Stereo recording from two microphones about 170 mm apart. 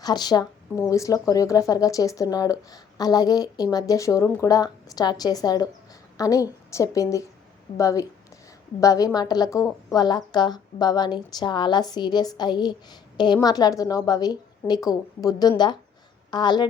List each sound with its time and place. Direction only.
0.0 s speech: 25° left (ahead or behind)